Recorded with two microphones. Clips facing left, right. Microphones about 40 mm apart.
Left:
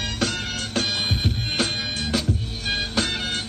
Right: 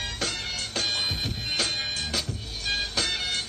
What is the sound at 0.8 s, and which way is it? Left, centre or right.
Music, left.